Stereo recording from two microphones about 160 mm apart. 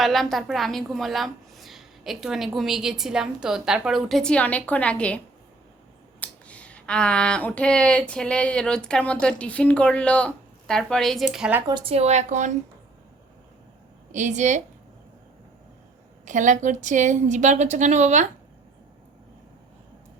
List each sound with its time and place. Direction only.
0.0 s a woman's voice: centre (ahead or behind)
11.7 s a woman's voice: 40° right (ahead or behind)
14.1 s a woman's voice: 50° right (ahead or behind)
16.2 s a woman's voice: 50° right (ahead or behind)